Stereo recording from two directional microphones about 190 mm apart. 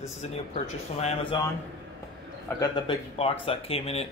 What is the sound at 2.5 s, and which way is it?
Speech, 25° left (ahead or behind).